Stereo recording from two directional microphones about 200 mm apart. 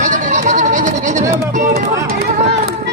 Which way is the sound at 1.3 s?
45° right (ahead or behind).